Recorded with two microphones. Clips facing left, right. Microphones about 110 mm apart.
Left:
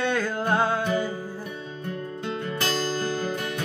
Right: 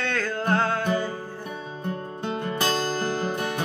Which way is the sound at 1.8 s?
30° right (ahead or behind).